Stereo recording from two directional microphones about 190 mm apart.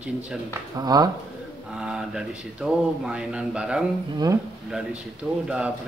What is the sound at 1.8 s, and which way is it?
Mantra, 5° right (ahead or behind).